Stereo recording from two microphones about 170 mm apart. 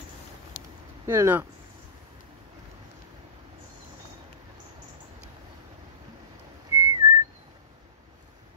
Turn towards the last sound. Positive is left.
turn(degrees=-15)  # may be behind; listen again after turning